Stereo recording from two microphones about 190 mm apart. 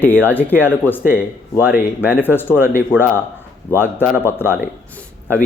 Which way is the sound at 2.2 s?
10° left (ahead or behind).